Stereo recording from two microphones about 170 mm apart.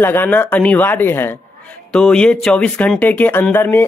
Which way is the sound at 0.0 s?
10° left (ahead or behind).